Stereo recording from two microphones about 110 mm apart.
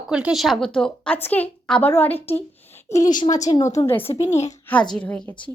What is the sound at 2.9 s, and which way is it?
A woman's voice, 30° left (ahead or behind).